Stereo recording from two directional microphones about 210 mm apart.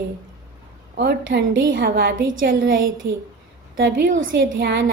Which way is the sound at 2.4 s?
45° right (ahead or behind).